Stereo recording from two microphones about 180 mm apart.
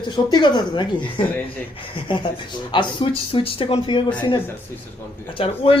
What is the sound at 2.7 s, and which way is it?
Speech, 25° left (ahead or behind).